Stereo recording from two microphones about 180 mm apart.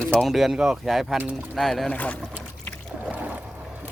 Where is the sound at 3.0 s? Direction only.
10° right (ahead or behind).